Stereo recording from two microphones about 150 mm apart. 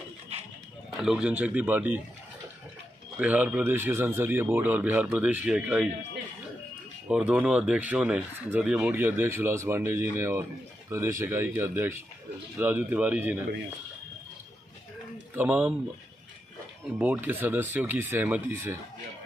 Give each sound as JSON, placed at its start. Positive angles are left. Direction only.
{"t": 1.0, "sound": "speech", "side_deg": -5}
{"t": 3.2, "sound": "speech", "side_deg": -10}
{"t": 7.1, "sound": "speech", "side_deg": -5}
{"t": 15.3, "sound": "speech", "side_deg": -10}
{"t": 17.0, "sound": "speech", "side_deg": -10}